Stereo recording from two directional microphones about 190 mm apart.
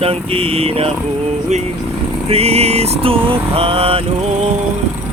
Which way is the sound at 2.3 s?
30° right (ahead or behind).